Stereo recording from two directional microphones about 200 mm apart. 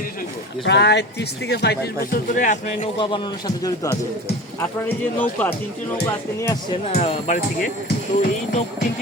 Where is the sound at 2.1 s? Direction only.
40° left (ahead or behind).